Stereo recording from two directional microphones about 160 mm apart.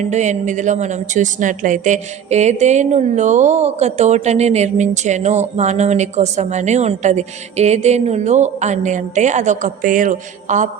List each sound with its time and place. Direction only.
0.0 s a woman's voice: 50° right (ahead or behind)